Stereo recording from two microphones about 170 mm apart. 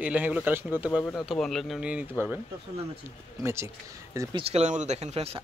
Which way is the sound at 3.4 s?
15° right (ahead or behind).